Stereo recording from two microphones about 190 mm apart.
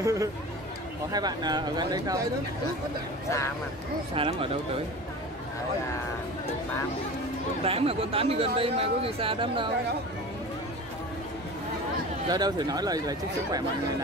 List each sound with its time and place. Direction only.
0.0 s speech: 15° right (ahead or behind)
4.1 s speech: 30° right (ahead or behind)
7.6 s speech: 30° right (ahead or behind)
12.3 s speech: 20° right (ahead or behind)